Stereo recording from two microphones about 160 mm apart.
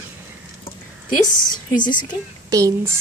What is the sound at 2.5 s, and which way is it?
Speech, 20° right (ahead or behind).